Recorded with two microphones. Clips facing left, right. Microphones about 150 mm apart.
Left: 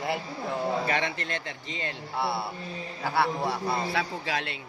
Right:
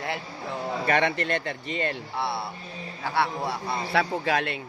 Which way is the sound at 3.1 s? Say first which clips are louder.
Even; centre (ahead or behind).